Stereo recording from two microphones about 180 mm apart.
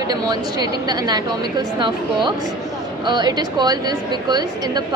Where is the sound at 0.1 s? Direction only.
20° right (ahead or behind).